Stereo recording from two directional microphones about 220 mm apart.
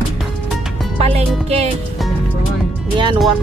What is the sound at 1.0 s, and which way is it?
Music, 30° right (ahead or behind).